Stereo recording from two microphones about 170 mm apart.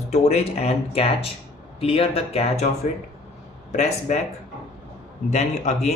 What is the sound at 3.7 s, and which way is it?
Speech, 40° left (ahead or behind).